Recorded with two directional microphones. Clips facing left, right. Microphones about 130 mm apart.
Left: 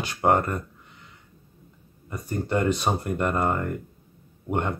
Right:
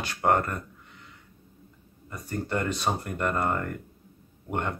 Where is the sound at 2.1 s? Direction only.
15° left (ahead or behind).